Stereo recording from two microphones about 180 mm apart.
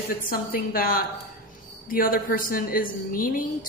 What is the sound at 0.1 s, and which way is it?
A woman's voice, 50° left (ahead or behind).